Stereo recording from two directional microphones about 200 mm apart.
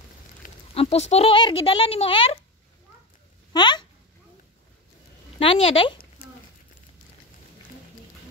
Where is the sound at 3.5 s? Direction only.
20° left (ahead or behind).